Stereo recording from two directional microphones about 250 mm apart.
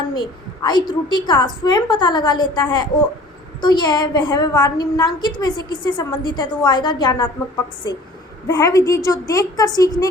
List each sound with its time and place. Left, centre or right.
0.1 s a woman's voice: centre